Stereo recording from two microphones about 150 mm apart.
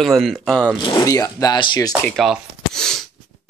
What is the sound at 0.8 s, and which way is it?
Speech, 30° left (ahead or behind).